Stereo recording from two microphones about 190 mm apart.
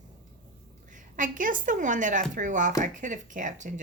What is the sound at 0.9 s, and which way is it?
Speech, 45° right (ahead or behind).